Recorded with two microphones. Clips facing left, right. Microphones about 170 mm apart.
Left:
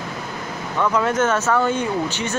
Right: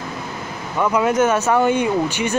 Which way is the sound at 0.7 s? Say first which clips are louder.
Right 3 dB; 15° right (ahead or behind).